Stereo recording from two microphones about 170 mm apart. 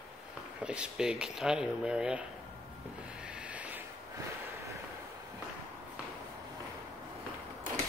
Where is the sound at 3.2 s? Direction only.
5° right (ahead or behind).